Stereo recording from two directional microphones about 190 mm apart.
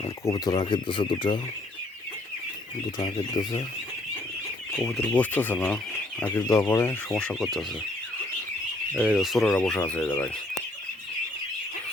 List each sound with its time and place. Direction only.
0.3 s speech: 20° left (ahead or behind)
3.0 s speech: 20° left (ahead or behind)
4.8 s speech: 5° left (ahead or behind)
7.1 s speech: 5° left (ahead or behind)
8.9 s speech: 5° right (ahead or behind); by 10.3 s 10° left (ahead or behind)